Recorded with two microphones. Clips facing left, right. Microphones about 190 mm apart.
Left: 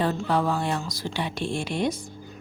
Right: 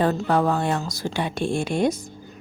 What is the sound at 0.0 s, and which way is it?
Speech, 45° right (ahead or behind).